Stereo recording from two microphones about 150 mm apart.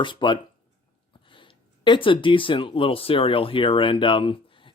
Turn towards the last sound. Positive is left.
turn(degrees=35)  # may be behind; listen again after turning